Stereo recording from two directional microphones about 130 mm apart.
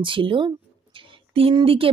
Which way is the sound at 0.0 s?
40° right (ahead or behind).